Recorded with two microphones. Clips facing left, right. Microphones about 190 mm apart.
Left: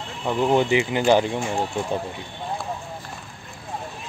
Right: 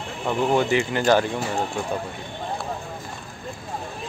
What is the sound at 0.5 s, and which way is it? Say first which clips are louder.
Speech: left 2 dB; 15° left (ahead or behind).